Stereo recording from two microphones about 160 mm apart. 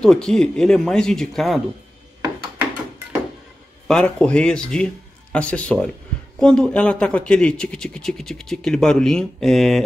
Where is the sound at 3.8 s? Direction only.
5° left (ahead or behind).